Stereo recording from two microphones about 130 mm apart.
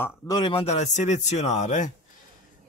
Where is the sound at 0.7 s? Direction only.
60° left (ahead or behind).